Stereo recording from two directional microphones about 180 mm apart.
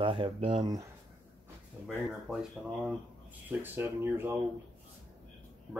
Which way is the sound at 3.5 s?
10° right (ahead or behind).